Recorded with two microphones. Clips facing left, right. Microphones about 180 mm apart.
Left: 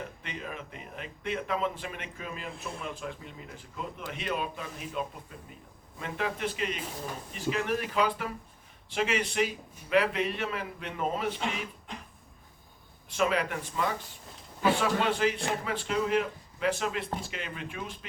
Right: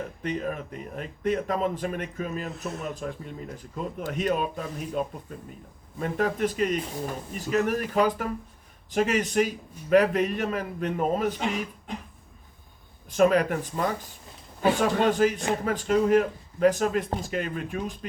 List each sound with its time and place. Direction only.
0.2 s speech: 45° right (ahead or behind)
13.1 s speech: 45° right (ahead or behind)